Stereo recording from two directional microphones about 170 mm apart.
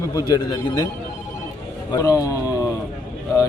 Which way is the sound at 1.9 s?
20° left (ahead or behind).